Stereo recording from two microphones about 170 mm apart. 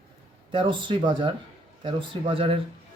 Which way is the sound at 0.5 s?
30° right (ahead or behind).